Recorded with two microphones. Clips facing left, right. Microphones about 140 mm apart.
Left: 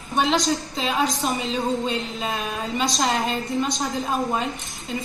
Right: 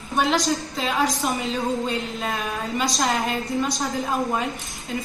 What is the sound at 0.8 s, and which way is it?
Speech, 20° left (ahead or behind).